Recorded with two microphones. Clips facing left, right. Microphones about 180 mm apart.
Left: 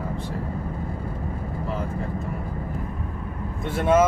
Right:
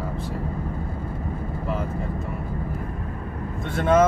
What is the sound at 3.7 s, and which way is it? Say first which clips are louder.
Speech: even; 5° left (ahead or behind).